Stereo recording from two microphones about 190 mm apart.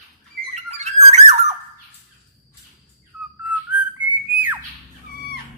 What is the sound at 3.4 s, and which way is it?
Whistling, 5° right (ahead or behind).